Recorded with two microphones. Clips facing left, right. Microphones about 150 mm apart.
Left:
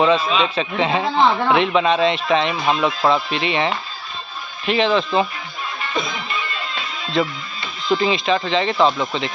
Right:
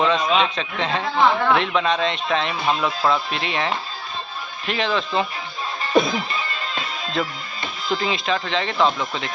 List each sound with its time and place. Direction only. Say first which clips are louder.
0.0 s speech: left 2 dB; 5° left (ahead or behind)
5.8 s music: right 8 dB; 35° right (ahead or behind)
7.2 s speech: left 6 dB; centre (ahead or behind)